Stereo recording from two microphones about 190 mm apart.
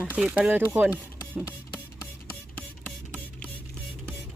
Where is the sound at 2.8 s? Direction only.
5° left (ahead or behind).